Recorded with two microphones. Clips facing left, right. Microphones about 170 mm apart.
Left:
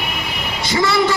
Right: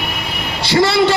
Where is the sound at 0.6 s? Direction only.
70° right (ahead or behind).